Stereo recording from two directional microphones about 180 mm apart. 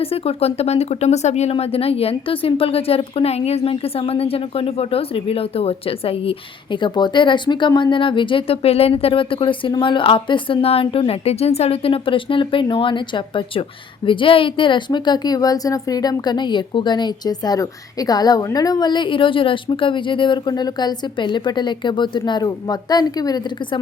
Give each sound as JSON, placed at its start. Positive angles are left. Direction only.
{"t": 0.0, "sound": "speech", "side_deg": 35}